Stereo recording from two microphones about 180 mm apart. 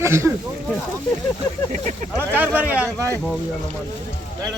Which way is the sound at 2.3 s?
10° right (ahead or behind).